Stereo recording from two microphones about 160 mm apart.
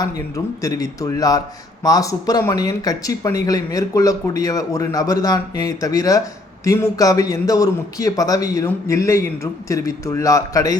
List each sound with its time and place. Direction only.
0.0 s speech: 20° left (ahead or behind)